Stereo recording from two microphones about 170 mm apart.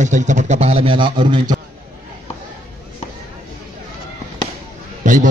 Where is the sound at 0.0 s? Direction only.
45° right (ahead or behind); by 1.6 s 25° right (ahead or behind).